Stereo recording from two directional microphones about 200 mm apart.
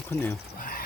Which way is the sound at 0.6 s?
45° left (ahead or behind).